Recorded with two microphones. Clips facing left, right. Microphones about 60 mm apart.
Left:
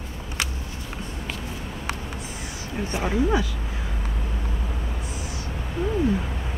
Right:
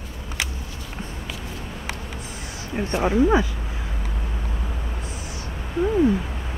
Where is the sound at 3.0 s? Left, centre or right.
Right.